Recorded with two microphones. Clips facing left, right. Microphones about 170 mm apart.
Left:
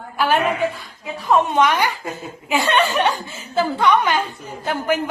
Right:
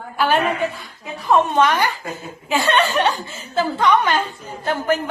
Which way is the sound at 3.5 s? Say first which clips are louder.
Even; 10° left (ahead or behind).